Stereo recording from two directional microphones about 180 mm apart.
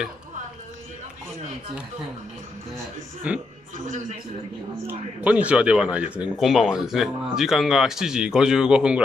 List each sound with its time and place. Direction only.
3.3 s a man's voice: 5° right (ahead or behind)
3.7 s a man's voice: 45° right (ahead or behind)
4.8 s a man's voice: 5° right (ahead or behind)